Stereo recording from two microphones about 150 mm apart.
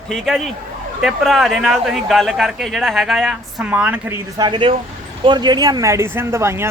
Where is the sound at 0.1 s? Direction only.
Centre (ahead or behind).